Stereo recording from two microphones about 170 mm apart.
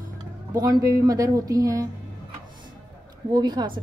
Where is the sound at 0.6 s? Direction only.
20° right (ahead or behind).